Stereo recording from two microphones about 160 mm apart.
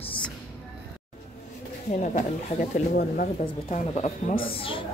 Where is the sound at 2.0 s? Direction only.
50° left (ahead or behind).